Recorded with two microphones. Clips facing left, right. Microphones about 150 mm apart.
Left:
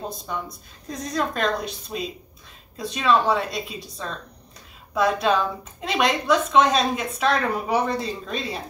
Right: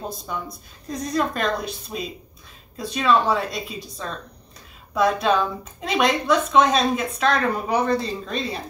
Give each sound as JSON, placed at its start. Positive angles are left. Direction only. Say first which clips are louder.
{"t": 0.8, "sound": "a woman's voice", "louder": "right 2 dB", "side_deg": 0}